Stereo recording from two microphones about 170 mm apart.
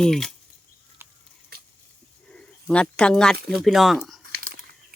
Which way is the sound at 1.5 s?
65° right (ahead or behind).